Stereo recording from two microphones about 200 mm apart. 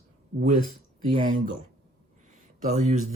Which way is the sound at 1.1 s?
40° right (ahead or behind).